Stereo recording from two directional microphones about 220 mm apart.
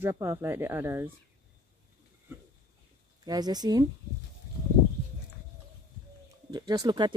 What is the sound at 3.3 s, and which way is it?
Speech, 20° right (ahead or behind).